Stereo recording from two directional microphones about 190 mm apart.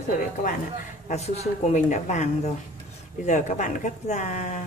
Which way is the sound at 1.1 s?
35° left (ahead or behind).